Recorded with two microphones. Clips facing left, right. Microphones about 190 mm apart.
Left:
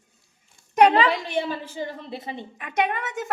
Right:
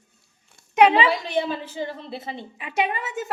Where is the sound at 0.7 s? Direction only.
5° right (ahead or behind).